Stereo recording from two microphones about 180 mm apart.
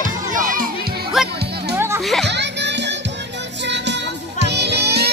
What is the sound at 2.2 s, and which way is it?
Music, 75° right (ahead or behind).